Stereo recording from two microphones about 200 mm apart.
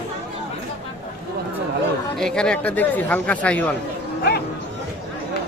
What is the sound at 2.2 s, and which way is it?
Speech, 5° left (ahead or behind).